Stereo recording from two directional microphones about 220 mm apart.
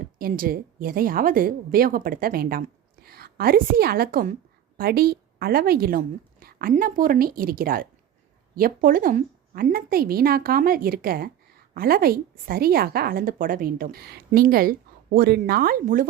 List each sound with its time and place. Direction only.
0.0 s a woman's voice: 40° right (ahead or behind)